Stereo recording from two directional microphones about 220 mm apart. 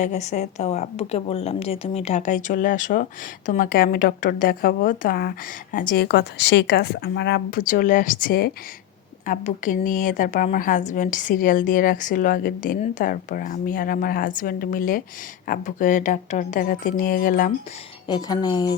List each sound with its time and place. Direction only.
0.0 s a woman's voice: 30° left (ahead or behind)
18.1 s speech: 20° left (ahead or behind)